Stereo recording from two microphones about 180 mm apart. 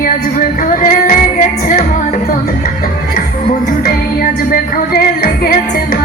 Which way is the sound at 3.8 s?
55° left (ahead or behind).